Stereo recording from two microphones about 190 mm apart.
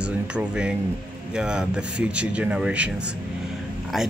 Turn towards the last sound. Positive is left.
turn(degrees=0)  # may be behind; listen again after turning